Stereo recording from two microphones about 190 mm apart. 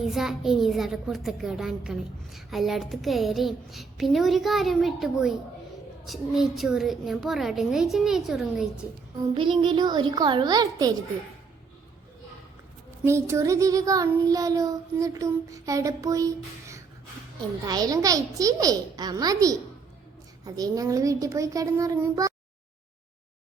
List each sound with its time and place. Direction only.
0.0 s a child's voice: centre (ahead or behind)
9.3 s a child's voice: 25° right (ahead or behind)
13.1 s child singing: 15° right (ahead or behind)
17.7 s a child's voice: 20° right (ahead or behind)
20.4 s child singing: 20° right (ahead or behind)